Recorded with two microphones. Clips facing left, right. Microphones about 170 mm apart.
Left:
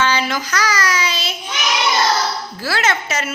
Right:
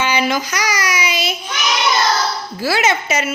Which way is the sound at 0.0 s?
15° right (ahead or behind).